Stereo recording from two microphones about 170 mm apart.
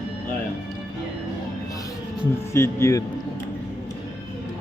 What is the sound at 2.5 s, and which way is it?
Speech, 15° left (ahead or behind).